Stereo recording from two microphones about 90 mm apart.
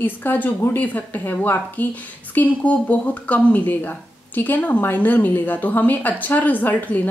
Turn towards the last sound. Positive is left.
turn(degrees=20)  # may be behind; listen again after turning